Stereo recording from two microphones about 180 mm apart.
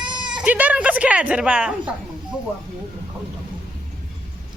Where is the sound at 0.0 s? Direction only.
25° right (ahead or behind).